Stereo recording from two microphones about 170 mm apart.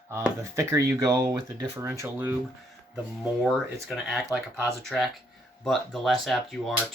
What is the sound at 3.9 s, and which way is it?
Speech, centre (ahead or behind).